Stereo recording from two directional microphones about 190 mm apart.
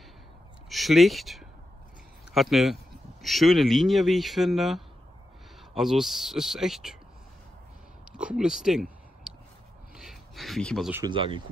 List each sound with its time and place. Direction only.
0.7 s speech: centre (ahead or behind)
8.1 s speech: 5° right (ahead or behind)
9.9 s speech: centre (ahead or behind)
11.1 s speech: 25° right (ahead or behind)